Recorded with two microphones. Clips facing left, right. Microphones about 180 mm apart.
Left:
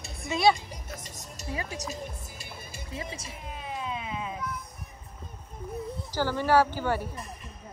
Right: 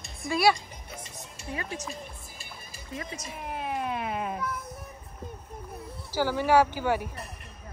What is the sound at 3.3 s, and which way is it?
Baby cry, 60° right (ahead or behind).